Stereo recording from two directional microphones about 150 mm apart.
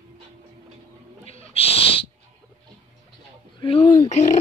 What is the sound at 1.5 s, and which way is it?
Owl, 40° left (ahead or behind).